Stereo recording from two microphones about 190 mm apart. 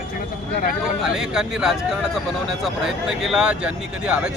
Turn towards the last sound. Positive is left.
turn(degrees=-5)  # may be behind; listen again after turning